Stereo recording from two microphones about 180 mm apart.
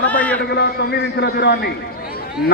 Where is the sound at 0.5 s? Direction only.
65° left (ahead or behind).